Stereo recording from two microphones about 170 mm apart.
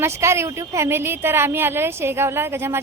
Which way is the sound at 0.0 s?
15° right (ahead or behind).